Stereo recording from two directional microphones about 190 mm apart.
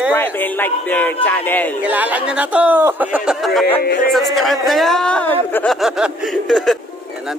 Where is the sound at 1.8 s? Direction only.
10° right (ahead or behind).